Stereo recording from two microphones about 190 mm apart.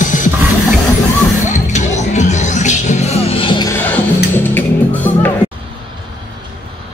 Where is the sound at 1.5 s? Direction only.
40° left (ahead or behind).